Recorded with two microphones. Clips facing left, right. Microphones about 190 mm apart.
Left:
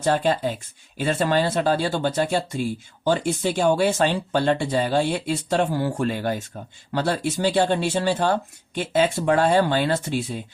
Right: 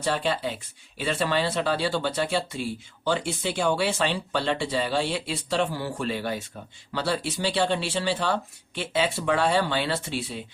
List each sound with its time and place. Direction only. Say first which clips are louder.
0.0 s speech: left 5 dB; 45° left (ahead or behind)